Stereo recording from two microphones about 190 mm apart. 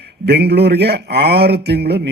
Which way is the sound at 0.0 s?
60° right (ahead or behind).